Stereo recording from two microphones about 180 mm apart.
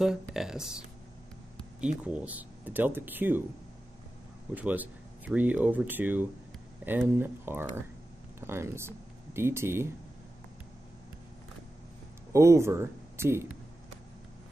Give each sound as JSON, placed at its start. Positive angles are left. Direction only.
{"t": 0.0, "sound": "speech", "side_deg": 0}
{"t": 2.0, "sound": "speech", "side_deg": -10}
{"t": 4.6, "sound": "speech", "side_deg": -10}
{"t": 12.3, "sound": "speech", "side_deg": -15}